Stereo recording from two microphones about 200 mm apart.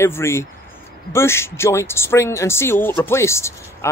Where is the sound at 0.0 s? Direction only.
10° left (ahead or behind).